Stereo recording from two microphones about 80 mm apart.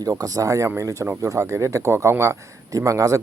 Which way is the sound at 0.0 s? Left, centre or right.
Right.